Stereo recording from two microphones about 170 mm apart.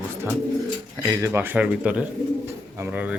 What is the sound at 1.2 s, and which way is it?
Speech, 15° right (ahead or behind).